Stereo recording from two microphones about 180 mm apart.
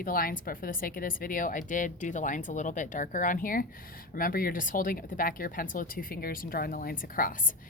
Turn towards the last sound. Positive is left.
turn(degrees=50)  # may be behind; listen again after turning